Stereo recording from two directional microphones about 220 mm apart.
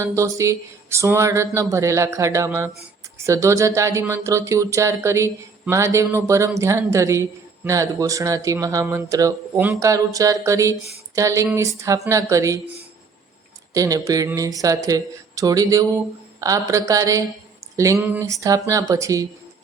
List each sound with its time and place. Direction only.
0.0 s speech: 15° right (ahead or behind)
13.7 s speech: 15° right (ahead or behind)